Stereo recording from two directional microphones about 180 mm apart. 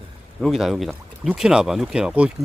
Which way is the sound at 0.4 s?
Centre (ahead or behind).